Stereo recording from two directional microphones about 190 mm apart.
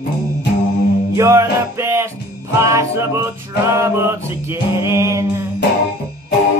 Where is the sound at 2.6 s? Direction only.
15° right (ahead or behind).